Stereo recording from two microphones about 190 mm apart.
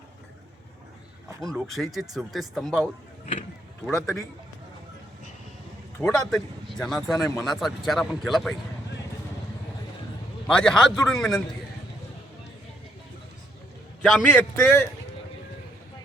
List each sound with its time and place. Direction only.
1.4 s speech: centre (ahead or behind)
6.1 s speech: centre (ahead or behind)
10.4 s speech: 5° left (ahead or behind)
14.0 s a man's voice: 5° left (ahead or behind)